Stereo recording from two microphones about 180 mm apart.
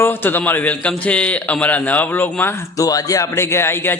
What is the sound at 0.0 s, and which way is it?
Speech, 10° left (ahead or behind).